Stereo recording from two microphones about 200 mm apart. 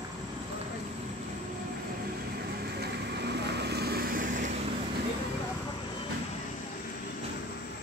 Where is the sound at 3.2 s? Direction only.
55° right (ahead or behind).